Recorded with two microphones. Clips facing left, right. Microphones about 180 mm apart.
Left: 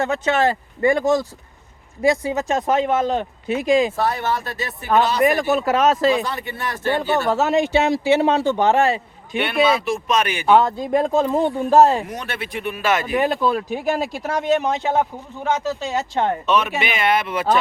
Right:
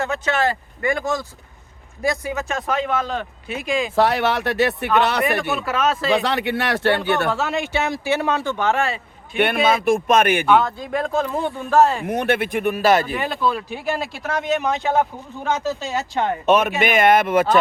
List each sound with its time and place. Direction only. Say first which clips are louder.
0.0 s speech: left 3 dB; 30° left (ahead or behind)
2.0 s speech: left 4 dB; 25° left (ahead or behind)
3.5 s speech: left 6 dB; 35° left (ahead or behind)
3.9 s speech: right 4 dB; 85° right; by 5.2 s 65° right (ahead or behind)
5.4 s speech: left 4 dB; 40° left (ahead or behind)
6.2 s speech: right 6 dB; 80° right
7.3 s speech: left 5 dB; 40° left (ahead or behind)
7.8 s speech: left 4 dB; 20° left (ahead or behind)
8.5 s speech: left 4 dB; 35° left (ahead or behind)
9.4 s speech: right 1 dB; 50° right (ahead or behind)
10.5 s speech: left 2 dB; 35° left (ahead or behind)
12.0 s speech: right 9 dB; 55° right (ahead or behind); by 13.1 s 35° right (ahead or behind)
13.1 s speech: left 4 dB; 45° left (ahead or behind); by 16.2 s 20° left (ahead or behind)
16.5 s speech: right 3 dB; 50° right (ahead or behind)